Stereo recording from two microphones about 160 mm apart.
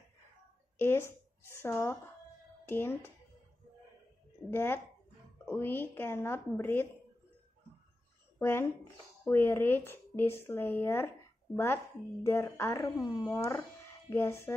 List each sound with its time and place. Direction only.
0.7 s a woman's voice: 15° left (ahead or behind)
4.5 s speech: 15° left (ahead or behind)
8.4 s speech: 15° left (ahead or behind)